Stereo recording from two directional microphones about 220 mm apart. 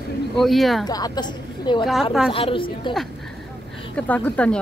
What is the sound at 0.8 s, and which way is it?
A woman's voice, 15° left (ahead or behind).